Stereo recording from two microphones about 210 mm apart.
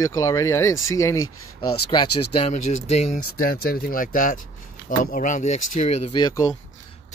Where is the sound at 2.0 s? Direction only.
90° left.